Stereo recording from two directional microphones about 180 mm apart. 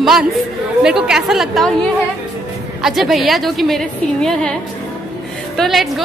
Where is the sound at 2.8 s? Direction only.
Centre (ahead or behind).